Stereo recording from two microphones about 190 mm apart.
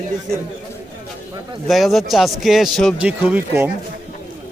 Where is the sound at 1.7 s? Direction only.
Centre (ahead or behind).